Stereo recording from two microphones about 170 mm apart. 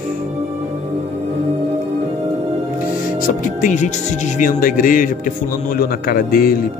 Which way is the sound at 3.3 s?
50° left (ahead or behind).